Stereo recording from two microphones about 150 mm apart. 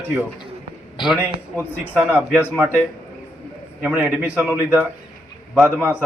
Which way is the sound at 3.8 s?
10° right (ahead or behind).